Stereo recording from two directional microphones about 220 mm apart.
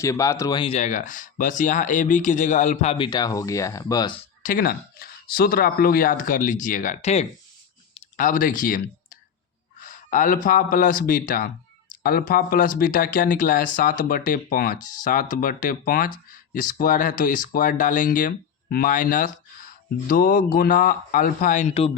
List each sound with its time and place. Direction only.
0.0 s speech: 15° left (ahead or behind)
4.4 s speech: 40° left (ahead or behind)